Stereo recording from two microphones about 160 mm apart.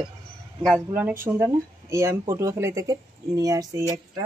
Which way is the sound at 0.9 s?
10° right (ahead or behind).